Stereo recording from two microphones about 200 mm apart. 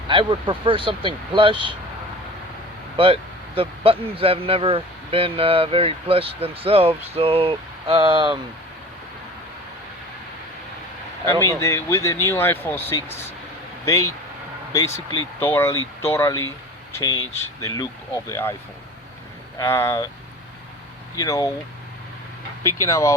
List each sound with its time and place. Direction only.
0.1 s a man's voice: 25° right (ahead or behind)
3.0 s a man's voice: 30° right (ahead or behind)
11.3 s speech: 15° left (ahead or behind)
19.5 s speech: 15° left (ahead or behind)
21.2 s speech: 15° left (ahead or behind)
22.8 s speech: 15° left (ahead or behind)